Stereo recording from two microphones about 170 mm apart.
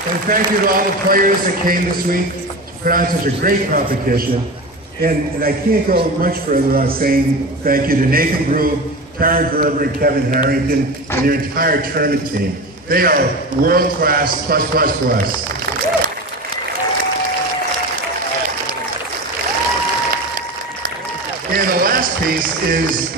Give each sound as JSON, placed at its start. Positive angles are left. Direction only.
{"t": 0.3, "sound": "a man's voice", "side_deg": -55}
{"t": 21.5, "sound": "speech", "side_deg": -55}